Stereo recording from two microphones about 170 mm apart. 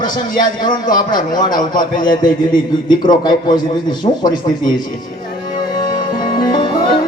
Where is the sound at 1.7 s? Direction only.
50° left (ahead or behind).